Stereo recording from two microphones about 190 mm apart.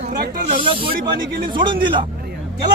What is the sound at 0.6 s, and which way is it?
A man's voice, 30° right (ahead or behind).